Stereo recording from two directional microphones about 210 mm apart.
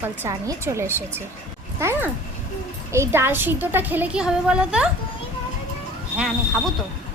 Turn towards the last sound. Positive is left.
turn(degrees=0)  # may be behind; listen again after turning